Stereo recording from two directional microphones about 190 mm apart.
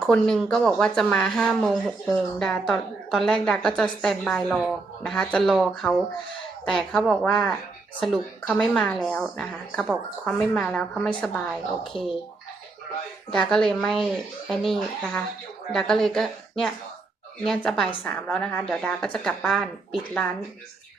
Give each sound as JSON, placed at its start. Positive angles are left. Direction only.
{"t": 0.0, "sound": "speech", "side_deg": 5}
{"t": 11.9, "sound": "speech", "side_deg": 25}
{"t": 13.3, "sound": "speech", "side_deg": 5}